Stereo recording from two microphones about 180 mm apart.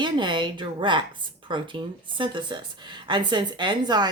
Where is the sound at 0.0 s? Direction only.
25° right (ahead or behind).